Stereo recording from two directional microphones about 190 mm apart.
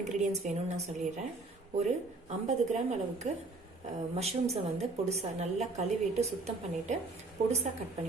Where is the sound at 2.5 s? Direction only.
35° right (ahead or behind).